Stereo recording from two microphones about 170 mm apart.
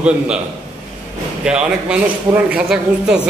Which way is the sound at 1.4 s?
5° right (ahead or behind).